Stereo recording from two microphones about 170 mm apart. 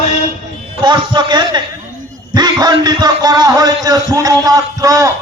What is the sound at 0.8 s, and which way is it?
A man's voice, 25° right (ahead or behind).